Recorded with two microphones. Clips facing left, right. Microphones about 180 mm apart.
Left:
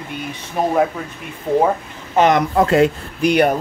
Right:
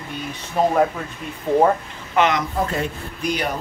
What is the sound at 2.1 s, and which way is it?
Speech, 45° left (ahead or behind).